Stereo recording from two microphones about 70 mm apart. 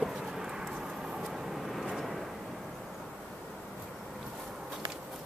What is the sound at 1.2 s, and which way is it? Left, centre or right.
Vehicle, centre.